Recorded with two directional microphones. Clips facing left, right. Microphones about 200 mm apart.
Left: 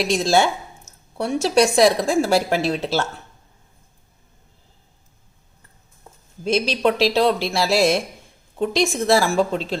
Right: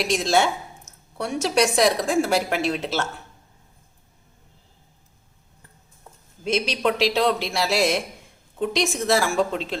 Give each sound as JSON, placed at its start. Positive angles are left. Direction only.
{"t": 0.1, "sound": "a woman's voice", "side_deg": 30}
{"t": 6.4, "sound": "a woman's voice", "side_deg": 35}